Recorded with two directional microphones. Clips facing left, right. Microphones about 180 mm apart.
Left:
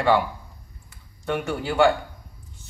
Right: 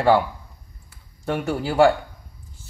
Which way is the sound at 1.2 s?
35° right (ahead or behind).